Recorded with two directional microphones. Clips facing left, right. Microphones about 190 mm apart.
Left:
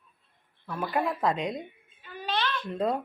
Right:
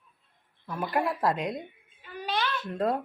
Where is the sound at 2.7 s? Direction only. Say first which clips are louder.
Even; centre (ahead or behind).